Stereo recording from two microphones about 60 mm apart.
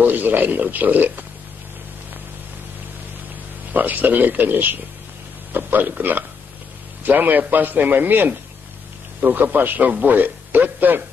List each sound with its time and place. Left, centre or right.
0.0 s speech: right
3.7 s a man's voice: right